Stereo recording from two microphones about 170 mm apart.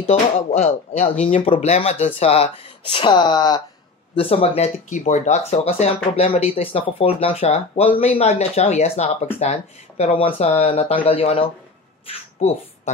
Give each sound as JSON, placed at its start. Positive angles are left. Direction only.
{"t": 0.0, "sound": "speech", "side_deg": 40}